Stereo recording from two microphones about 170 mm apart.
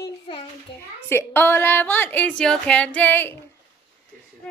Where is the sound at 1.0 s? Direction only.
15° left (ahead or behind).